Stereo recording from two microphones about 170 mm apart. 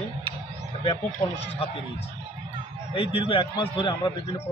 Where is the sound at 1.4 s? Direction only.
40° left (ahead or behind).